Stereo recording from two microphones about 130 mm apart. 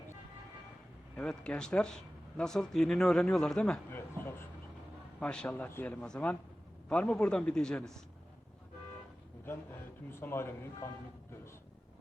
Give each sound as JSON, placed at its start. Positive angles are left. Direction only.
{"t": 1.1, "sound": "speech", "side_deg": 10}
{"t": 3.9, "sound": "a sound", "side_deg": 20}
{"t": 5.2, "sound": "speech", "side_deg": 5}
{"t": 10.1, "sound": "a man's voice", "side_deg": 15}